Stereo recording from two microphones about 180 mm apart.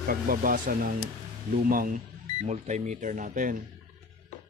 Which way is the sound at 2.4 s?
40° right (ahead or behind).